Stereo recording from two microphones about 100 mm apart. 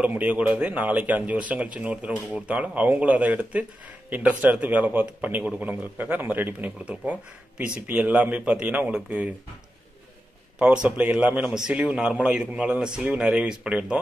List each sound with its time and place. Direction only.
0.0 s speech: 15° right (ahead or behind)
10.6 s speech: 10° right (ahead or behind)